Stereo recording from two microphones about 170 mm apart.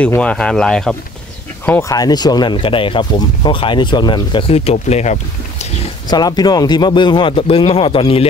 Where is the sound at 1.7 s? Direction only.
20° left (ahead or behind); by 5.7 s 40° left (ahead or behind).